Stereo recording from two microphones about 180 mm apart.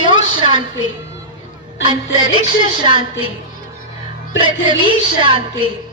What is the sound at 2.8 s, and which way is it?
Music, 25° right (ahead or behind).